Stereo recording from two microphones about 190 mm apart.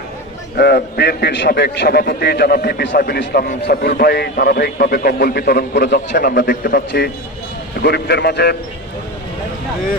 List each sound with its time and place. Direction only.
0.5 s a man's voice: 60° left (ahead or behind)